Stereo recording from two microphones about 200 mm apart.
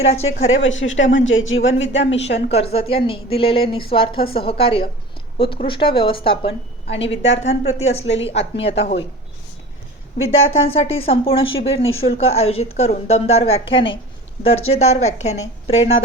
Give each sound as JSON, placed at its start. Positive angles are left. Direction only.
{"t": 0.0, "sound": "a woman's voice", "side_deg": 30}
{"t": 0.4, "sound": "speech", "side_deg": 75}
{"t": 2.7, "sound": "a woman's voice", "side_deg": 30}
{"t": 10.5, "sound": "a woman's voice", "side_deg": 30}